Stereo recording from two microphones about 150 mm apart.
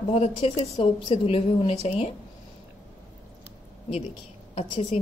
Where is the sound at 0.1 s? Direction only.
40° left (ahead or behind).